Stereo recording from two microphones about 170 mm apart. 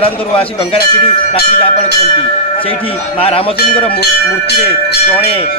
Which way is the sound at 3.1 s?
35° left (ahead or behind).